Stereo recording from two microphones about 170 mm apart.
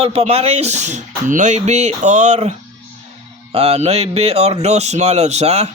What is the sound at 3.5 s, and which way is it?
Speech, 35° right (ahead or behind).